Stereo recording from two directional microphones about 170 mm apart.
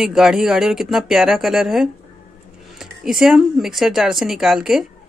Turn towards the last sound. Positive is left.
turn(degrees=0)  # may be behind; listen again after turning